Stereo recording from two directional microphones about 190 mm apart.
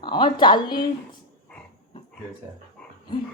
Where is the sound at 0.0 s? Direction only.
25° left (ahead or behind).